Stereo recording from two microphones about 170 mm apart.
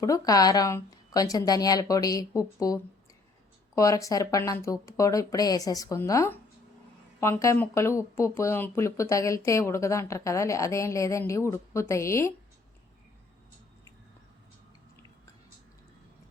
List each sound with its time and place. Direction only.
0.0 s speech: 20° left (ahead or behind)